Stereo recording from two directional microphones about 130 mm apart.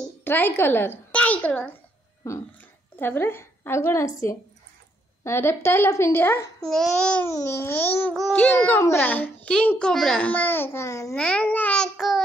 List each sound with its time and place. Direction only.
0.2 s a woman's voice: 15° left (ahead or behind)
6.6 s speech: 5° left (ahead or behind)
7.2 s a child's voice: 20° left (ahead or behind)
8.5 s a child's voice: 20° left (ahead or behind)
11.1 s a child's voice: 10° left (ahead or behind)